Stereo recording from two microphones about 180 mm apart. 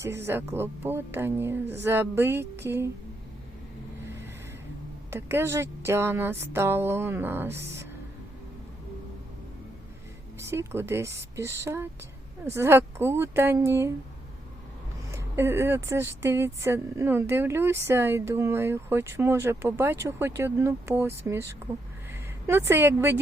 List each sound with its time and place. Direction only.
0.0 s speech: 15° right (ahead or behind)
5.1 s speech: 15° right (ahead or behind)
10.5 s speech: 15° right (ahead or behind)
15.1 s speech: 15° right (ahead or behind)